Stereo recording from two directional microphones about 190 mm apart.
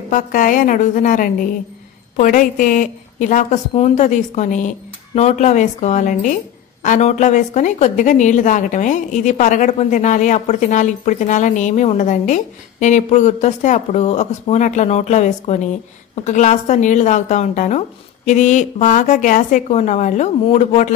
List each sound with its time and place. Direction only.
0.1 s a woman's voice: 45° left (ahead or behind)